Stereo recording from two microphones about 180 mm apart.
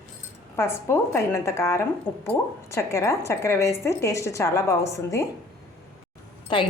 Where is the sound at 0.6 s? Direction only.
15° left (ahead or behind).